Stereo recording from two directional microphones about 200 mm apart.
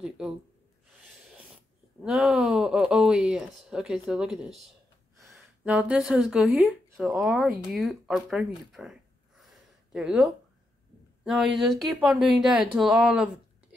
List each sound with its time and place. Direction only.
2.0 s speech: centre (ahead or behind)
9.4 s a sound: centre (ahead or behind)
11.2 s speech: centre (ahead or behind)